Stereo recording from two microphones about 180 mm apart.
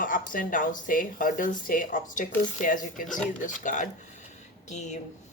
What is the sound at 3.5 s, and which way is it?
Speech, 45° left (ahead or behind).